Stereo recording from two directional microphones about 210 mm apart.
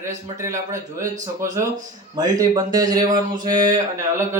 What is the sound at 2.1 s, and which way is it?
Speech, 20° right (ahead or behind).